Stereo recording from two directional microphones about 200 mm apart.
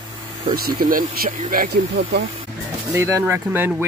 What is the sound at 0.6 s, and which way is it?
Speech, 45° right (ahead or behind).